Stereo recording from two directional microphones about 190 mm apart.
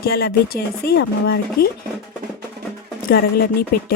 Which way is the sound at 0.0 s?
55° left (ahead or behind).